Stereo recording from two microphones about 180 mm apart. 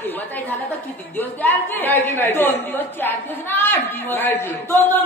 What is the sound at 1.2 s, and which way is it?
A woman's voice, 10° left (ahead or behind).